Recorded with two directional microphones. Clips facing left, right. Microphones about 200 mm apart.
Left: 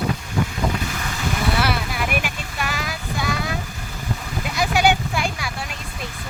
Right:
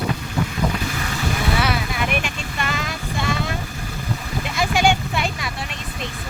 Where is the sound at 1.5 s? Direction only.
Centre (ahead or behind).